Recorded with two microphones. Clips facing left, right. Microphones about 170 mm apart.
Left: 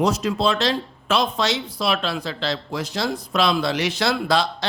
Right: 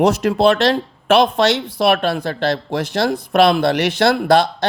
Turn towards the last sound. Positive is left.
turn(degrees=-55)  # may be behind; listen again after turning